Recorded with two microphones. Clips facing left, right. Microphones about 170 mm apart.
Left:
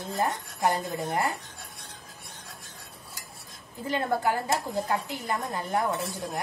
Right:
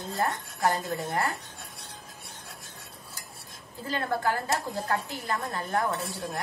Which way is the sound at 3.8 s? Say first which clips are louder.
Left 2 dB; 20° left (ahead or behind).